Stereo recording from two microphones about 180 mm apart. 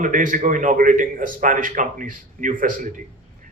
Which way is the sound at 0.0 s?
45° right (ahead or behind).